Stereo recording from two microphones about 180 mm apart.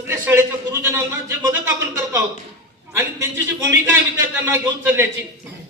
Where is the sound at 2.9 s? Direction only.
15° right (ahead or behind).